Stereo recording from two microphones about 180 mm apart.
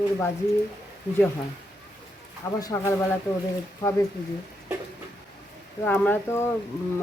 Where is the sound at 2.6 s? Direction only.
15° left (ahead or behind).